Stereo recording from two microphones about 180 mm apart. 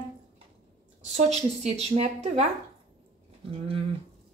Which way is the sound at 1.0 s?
40° right (ahead or behind).